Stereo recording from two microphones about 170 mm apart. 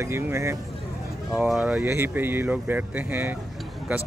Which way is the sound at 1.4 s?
5° right (ahead or behind).